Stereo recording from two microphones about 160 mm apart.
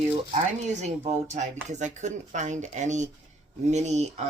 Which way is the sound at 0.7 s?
45° right (ahead or behind).